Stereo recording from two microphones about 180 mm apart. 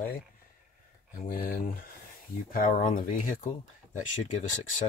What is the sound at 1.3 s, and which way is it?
Speech, 55° left (ahead or behind).